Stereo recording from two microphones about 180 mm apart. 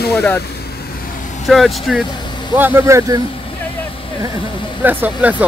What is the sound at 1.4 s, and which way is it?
Speech, centre (ahead or behind).